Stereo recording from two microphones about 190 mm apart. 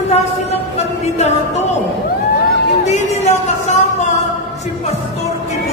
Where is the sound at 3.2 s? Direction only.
40° left (ahead or behind).